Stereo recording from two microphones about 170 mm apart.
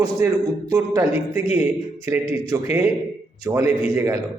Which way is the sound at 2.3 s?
20° right (ahead or behind).